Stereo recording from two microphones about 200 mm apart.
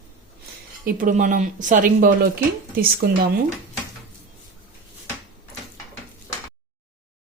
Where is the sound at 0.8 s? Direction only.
40° right (ahead or behind).